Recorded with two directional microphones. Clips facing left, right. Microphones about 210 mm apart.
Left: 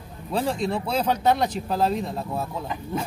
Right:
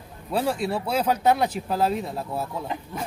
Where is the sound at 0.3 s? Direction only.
5° right (ahead or behind).